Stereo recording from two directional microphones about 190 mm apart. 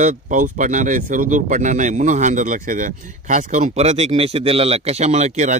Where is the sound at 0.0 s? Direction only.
40° right (ahead or behind).